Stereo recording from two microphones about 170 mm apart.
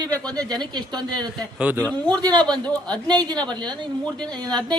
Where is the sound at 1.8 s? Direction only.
5° left (ahead or behind).